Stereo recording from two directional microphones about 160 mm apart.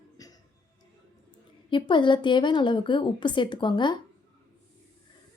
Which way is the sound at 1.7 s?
30° left (ahead or behind).